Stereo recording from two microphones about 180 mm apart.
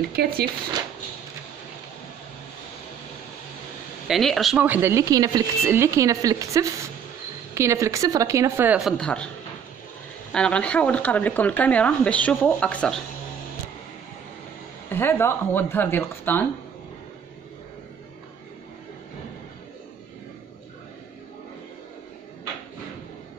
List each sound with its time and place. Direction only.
0.1 s speech: 60° right (ahead or behind)
4.1 s speech: centre (ahead or behind)
10.3 s speech: 5° left (ahead or behind)
14.9 s speech: 10° left (ahead or behind)